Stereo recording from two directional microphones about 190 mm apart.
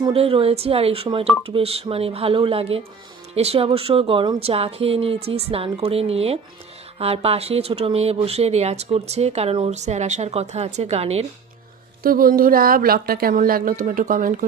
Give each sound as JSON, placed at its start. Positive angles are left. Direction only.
{"t": 0.0, "sound": "speech", "side_deg": -30}
{"t": 12.0, "sound": "a woman's voice", "side_deg": -50}